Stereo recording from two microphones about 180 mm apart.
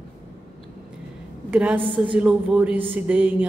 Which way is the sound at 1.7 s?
30° right (ahead or behind).